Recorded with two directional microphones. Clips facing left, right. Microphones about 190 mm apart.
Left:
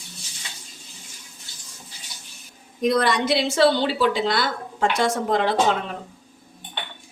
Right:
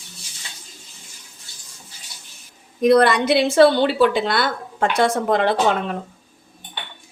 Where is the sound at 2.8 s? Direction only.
60° right (ahead or behind).